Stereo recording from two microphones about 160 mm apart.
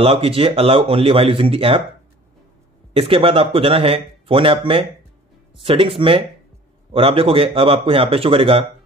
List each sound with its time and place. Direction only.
0.0 s speech: 35° right (ahead or behind)
2.9 s speech: 35° right (ahead or behind)